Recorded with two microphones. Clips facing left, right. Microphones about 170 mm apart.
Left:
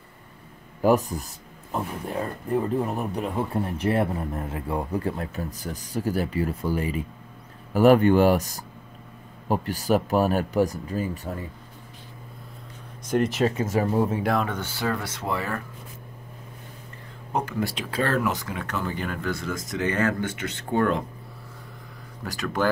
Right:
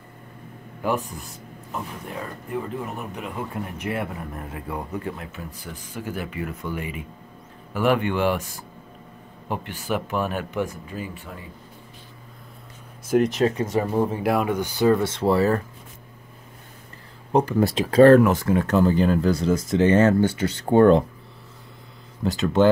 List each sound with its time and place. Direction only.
0.8 s speech: 40° left (ahead or behind)
13.1 s speech: centre (ahead or behind)
14.2 s speech: 10° right (ahead or behind); by 15.6 s 35° right (ahead or behind)
17.3 s speech: 35° right (ahead or behind)
22.2 s speech: 25° right (ahead or behind)